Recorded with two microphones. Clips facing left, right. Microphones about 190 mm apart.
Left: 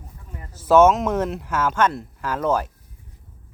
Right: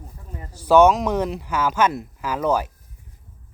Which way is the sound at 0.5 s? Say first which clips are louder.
Even; centre (ahead or behind).